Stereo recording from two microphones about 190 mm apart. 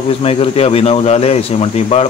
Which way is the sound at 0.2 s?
30° left (ahead or behind).